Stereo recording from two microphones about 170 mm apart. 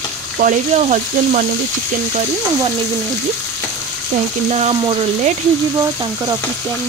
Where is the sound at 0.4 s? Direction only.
45° right (ahead or behind).